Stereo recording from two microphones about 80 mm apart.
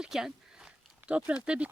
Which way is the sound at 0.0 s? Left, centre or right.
Centre.